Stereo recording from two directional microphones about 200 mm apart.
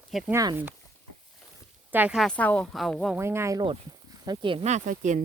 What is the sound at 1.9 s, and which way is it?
A woman's voice, 5° right (ahead or behind).